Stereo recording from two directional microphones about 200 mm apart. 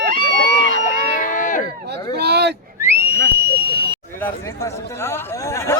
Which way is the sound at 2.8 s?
15° right (ahead or behind).